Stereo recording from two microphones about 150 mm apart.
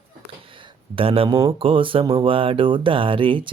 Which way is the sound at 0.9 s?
40° right (ahead or behind).